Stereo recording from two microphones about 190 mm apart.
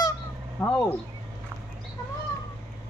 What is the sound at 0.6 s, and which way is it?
Speech, 5° left (ahead or behind).